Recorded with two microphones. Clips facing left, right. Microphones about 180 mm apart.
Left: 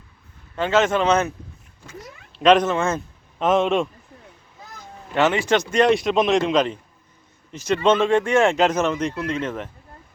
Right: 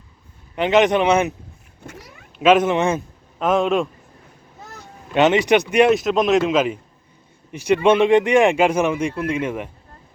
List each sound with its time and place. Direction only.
0.5 s speech: 15° right (ahead or behind)
2.4 s speech: 5° right (ahead or behind)
3.3 s speech: centre (ahead or behind)
5.1 s speech: 20° right (ahead or behind)
5.9 s speech: centre (ahead or behind)